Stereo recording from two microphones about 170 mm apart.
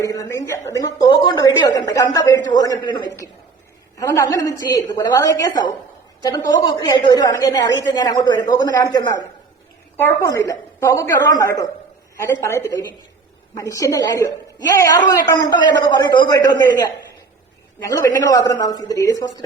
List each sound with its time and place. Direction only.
0.0 s a man's voice: 20° left (ahead or behind)